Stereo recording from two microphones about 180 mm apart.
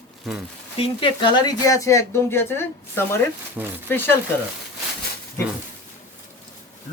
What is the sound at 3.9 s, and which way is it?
Speech, 10° left (ahead or behind).